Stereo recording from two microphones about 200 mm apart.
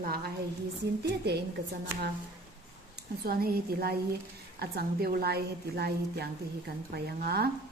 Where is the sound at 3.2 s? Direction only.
50° right (ahead or behind).